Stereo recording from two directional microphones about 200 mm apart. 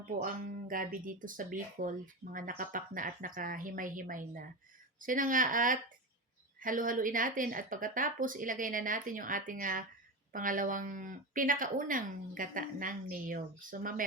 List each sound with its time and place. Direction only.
0.2 s speech: 45° right (ahead or behind)